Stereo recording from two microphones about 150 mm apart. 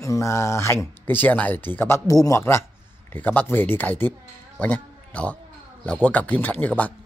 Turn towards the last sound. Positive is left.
turn(degrees=10)  # may be behind; listen again after turning